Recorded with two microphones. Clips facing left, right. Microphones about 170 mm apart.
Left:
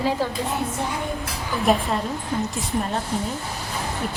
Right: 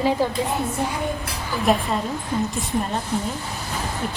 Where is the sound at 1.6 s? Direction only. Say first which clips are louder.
Even; centre (ahead or behind).